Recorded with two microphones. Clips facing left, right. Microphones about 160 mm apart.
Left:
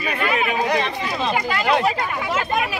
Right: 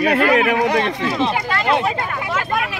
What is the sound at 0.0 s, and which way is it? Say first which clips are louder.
Speech: right 7 dB; 70° right (ahead or behind).